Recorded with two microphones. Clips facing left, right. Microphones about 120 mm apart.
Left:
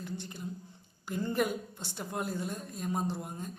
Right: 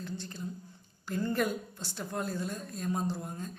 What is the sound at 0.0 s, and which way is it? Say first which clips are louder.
A woman's voice: right 1 dB; 15° left (ahead or behind).